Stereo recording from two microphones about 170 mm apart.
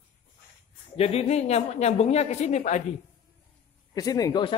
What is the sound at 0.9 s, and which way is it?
Speech, 35° left (ahead or behind).